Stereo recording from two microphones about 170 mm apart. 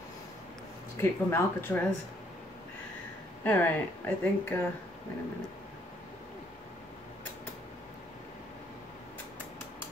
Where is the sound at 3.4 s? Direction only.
10° left (ahead or behind).